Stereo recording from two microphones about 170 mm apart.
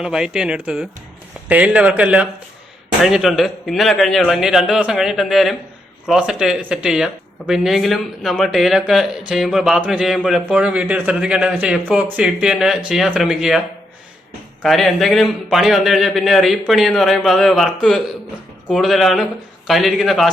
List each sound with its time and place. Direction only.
0.0 s speech: 5° right (ahead or behind)
14.6 s speech: centre (ahead or behind)